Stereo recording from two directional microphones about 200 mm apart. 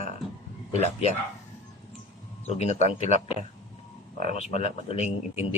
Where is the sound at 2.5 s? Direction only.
35° left (ahead or behind).